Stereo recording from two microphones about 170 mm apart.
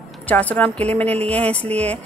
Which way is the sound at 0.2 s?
10° left (ahead or behind).